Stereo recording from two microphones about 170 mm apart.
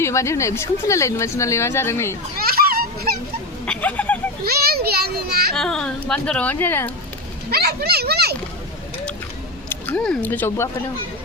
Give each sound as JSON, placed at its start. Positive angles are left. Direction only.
{"t": 0.0, "sound": "speech", "side_deg": 15}
{"t": 2.4, "sound": "children playing", "side_deg": -60}
{"t": 3.7, "sound": "speech", "side_deg": 10}
{"t": 4.4, "sound": "a child's voice", "side_deg": -65}
{"t": 5.5, "sound": "a woman's voice", "side_deg": 5}
{"t": 7.5, "sound": "speech", "side_deg": -65}
{"t": 9.6, "sound": "speech", "side_deg": 10}